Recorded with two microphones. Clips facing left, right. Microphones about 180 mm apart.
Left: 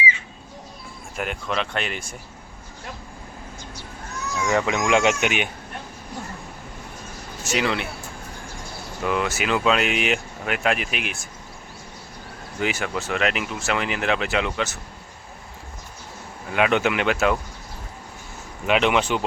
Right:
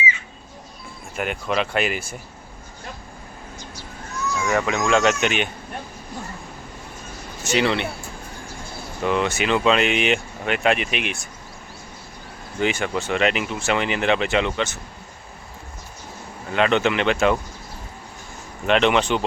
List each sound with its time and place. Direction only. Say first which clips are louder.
1.1 s speech: right 3 dB; centre (ahead or behind)
4.4 s speech: even; 20° left (ahead or behind)
7.4 s speech: right 3 dB; centre (ahead or behind)
9.0 s speech: right 2 dB; 5° left (ahead or behind)
12.5 s speech: right 3 dB; 5° left (ahead or behind)
16.5 s speech: right 1 dB; 10° left (ahead or behind)
18.6 s speech: right 2 dB; 5° left (ahead or behind)